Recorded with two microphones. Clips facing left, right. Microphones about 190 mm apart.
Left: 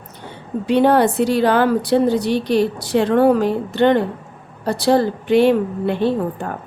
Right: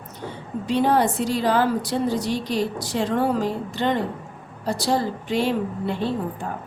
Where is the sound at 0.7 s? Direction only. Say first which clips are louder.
Left 6 dB; 65° left (ahead or behind).